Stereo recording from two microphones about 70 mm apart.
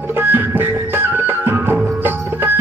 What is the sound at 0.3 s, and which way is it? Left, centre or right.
Music, right.